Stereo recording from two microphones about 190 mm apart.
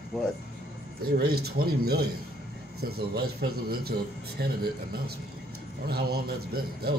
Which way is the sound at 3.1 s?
55° right (ahead or behind).